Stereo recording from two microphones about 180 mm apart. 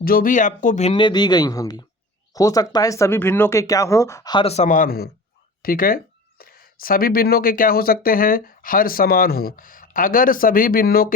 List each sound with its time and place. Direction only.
0.0 s speech: 55° left (ahead or behind)